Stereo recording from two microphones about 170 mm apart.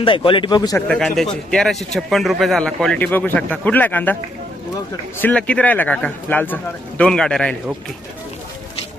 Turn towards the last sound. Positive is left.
turn(degrees=5)  # may be behind; listen again after turning